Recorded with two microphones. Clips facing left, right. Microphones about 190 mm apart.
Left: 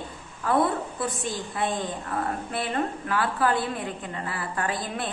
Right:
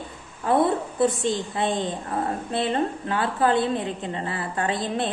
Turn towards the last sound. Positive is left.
turn(degrees=-25)  # may be behind; listen again after turning